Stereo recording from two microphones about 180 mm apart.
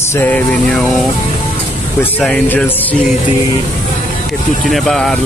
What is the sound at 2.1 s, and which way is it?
Speech, 5° left (ahead or behind).